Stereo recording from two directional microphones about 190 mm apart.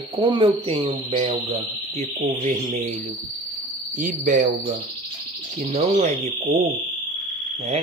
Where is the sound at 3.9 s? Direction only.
45° right (ahead or behind).